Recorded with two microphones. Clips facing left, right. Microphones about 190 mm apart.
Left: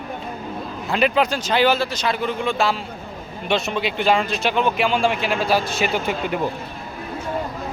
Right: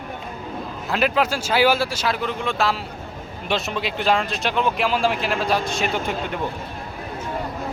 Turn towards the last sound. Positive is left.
turn(degrees=5)  # may be behind; listen again after turning